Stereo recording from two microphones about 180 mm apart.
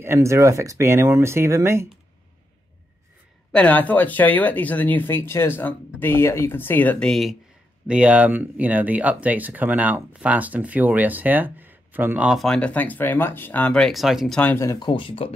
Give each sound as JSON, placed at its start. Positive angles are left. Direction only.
{"t": 0.0, "sound": "speech", "side_deg": -15}
{"t": 3.5, "sound": "speech", "side_deg": 10}
{"t": 14.9, "sound": "speech", "side_deg": 30}